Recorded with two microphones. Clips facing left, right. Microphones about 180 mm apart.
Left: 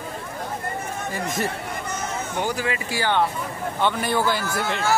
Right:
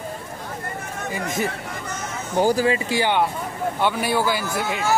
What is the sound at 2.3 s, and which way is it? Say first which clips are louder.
Speech: right 9 dB; 35° right (ahead or behind).